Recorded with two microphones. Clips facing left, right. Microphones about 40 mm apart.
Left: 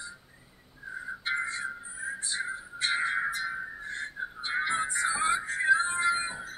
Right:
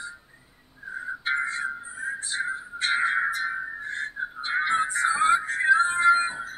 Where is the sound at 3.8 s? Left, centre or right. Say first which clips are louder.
Right 5 dB; right.